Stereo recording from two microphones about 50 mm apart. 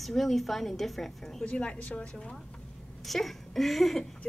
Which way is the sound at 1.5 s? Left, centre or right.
Left.